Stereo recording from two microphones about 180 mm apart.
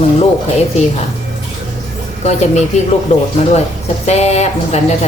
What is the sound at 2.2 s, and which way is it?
Speech, 40° left (ahead or behind).